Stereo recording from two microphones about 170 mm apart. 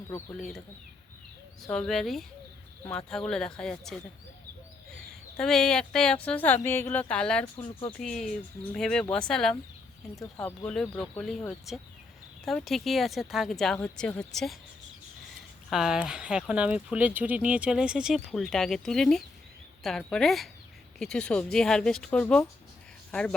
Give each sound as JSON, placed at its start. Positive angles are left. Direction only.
{"t": 1.6, "sound": "speech", "side_deg": 0}
{"t": 5.4, "sound": "a woman's voice", "side_deg": 5}
{"t": 15.7, "sound": "speech", "side_deg": -5}